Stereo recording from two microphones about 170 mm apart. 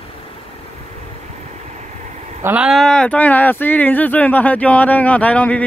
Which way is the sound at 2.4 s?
5° right (ahead or behind).